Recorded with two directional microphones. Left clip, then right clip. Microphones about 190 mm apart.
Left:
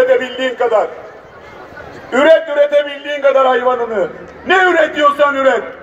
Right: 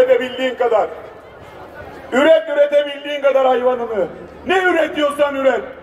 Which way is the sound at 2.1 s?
15° right (ahead or behind).